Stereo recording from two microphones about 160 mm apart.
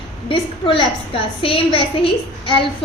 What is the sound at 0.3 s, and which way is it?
A woman's voice, 35° left (ahead or behind).